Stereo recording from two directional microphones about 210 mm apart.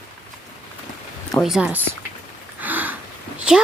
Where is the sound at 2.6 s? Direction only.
10° right (ahead or behind).